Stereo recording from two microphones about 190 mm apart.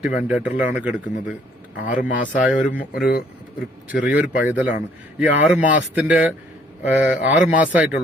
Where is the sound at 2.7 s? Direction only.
50° left (ahead or behind).